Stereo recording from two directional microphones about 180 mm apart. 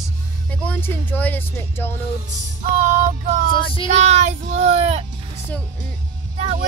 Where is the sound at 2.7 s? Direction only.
40° right (ahead or behind).